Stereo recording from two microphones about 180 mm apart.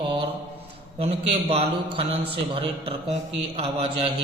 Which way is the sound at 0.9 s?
35° right (ahead or behind).